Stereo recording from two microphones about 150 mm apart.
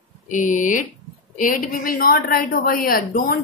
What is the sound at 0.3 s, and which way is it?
A woman's voice, 60° left (ahead or behind).